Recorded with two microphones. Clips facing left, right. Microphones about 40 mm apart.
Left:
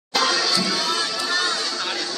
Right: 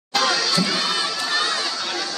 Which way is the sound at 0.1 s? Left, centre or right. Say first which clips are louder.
Even; centre.